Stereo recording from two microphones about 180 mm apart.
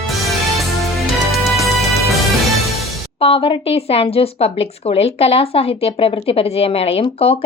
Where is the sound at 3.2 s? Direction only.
30° left (ahead or behind).